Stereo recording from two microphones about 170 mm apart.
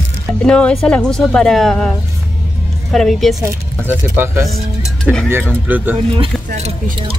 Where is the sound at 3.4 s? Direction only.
10° right (ahead or behind).